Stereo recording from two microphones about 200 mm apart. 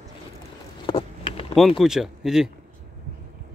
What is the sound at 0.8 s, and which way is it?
Vehicle, 25° left (ahead or behind).